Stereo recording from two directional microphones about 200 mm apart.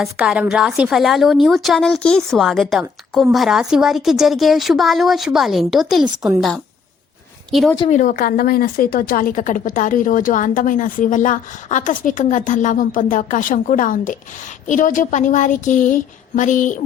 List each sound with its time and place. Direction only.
0.0 s a woman's voice: 5° right (ahead or behind)
7.9 s a woman's voice: 40° left (ahead or behind)